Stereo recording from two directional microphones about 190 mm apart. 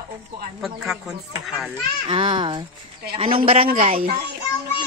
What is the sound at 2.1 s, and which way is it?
A man's voice, 25° right (ahead or behind).